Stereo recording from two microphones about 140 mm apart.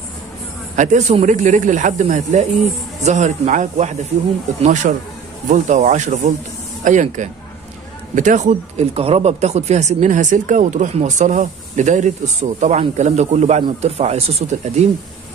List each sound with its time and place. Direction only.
0.7 s speech: 60° right (ahead or behind)
4.9 s a man's voice: 70° right (ahead or behind)
5.5 s speech: 60° right (ahead or behind)